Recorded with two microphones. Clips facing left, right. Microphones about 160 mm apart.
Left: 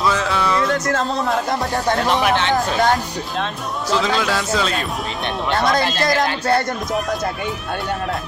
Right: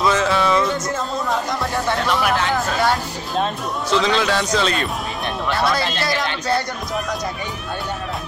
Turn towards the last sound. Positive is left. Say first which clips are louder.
# left 3 dB
turn(degrees=50)  # may be behind; listen again after turning